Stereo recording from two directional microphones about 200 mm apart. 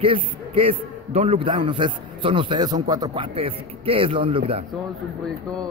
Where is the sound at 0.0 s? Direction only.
25° right (ahead or behind).